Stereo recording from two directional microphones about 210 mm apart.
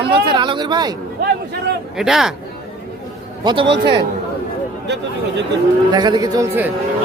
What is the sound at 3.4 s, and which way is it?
Speech, 20° right (ahead or behind).